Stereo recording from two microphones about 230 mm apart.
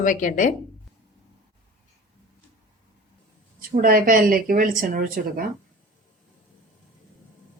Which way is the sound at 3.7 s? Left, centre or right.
Right.